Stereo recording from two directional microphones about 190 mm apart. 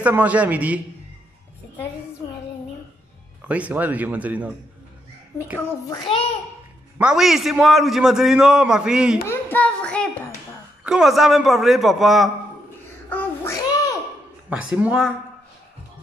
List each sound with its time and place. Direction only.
0.0 s speech: 10° right (ahead or behind)
3.4 s speech: 5° right (ahead or behind)
6.1 s a child's voice: 30° left (ahead or behind)
7.0 s a man's voice: 5° right (ahead or behind)
9.3 s a man's voice: 10° left (ahead or behind)
13.1 s babbling: 15° left (ahead or behind)
14.5 s a man's voice: 5° right (ahead or behind)